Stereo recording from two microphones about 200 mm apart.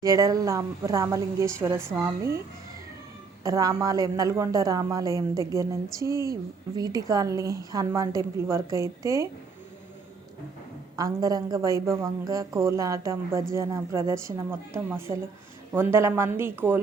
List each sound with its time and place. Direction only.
0.0 s a woman's voice: 20° right (ahead or behind)
3.4 s a woman's voice: 15° right (ahead or behind)
10.9 s a woman's voice: 15° right (ahead or behind)